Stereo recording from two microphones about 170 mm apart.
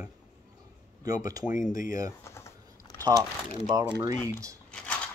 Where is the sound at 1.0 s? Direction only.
20° right (ahead or behind).